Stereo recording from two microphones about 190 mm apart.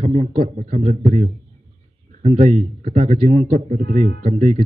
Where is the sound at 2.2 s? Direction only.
45° right (ahead or behind).